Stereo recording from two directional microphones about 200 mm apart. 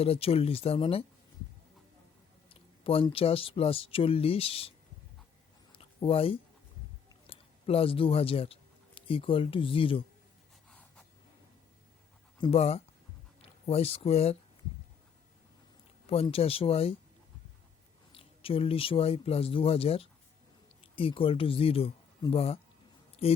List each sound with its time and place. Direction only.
0.0 s speech: 30° left (ahead or behind)
2.5 s speech: 25° left (ahead or behind)
5.7 s a sound: 25° left (ahead or behind)
9.0 s speech: 25° left (ahead or behind)
10.7 s a sound: 5° left (ahead or behind)
12.4 s speech: 30° left (ahead or behind)
16.0 s speech: 30° left (ahead or behind)
18.1 s speech: 30° left (ahead or behind)